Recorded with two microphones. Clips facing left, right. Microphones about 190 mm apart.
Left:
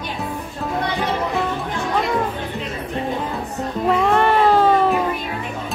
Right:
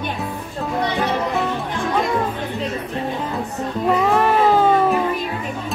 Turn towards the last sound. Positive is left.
turn(degrees=0)  # may be behind; listen again after turning